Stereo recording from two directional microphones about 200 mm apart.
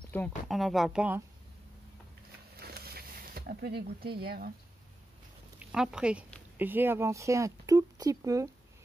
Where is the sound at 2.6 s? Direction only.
50° right (ahead or behind).